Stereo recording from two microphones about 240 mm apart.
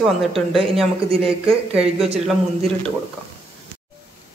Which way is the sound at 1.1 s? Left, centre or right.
Right.